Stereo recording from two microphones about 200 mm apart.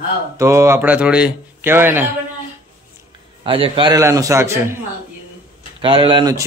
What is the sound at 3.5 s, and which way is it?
Speech, 25° right (ahead or behind).